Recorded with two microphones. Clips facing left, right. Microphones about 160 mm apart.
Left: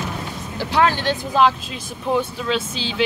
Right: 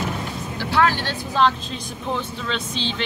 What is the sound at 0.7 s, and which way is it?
Speech, 20° left (ahead or behind).